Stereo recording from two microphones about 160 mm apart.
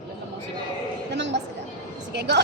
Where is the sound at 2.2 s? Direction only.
90° right.